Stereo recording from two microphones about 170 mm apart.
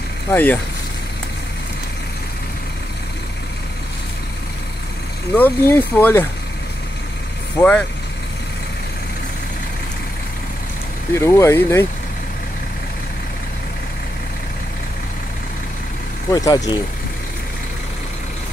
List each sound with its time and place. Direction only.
0.3 s speech: 10° left (ahead or behind)
5.3 s speech: 10° left (ahead or behind)
7.6 s speech: 20° left (ahead or behind)
11.1 s speech: 15° left (ahead or behind)
16.3 s speech: 20° left (ahead or behind)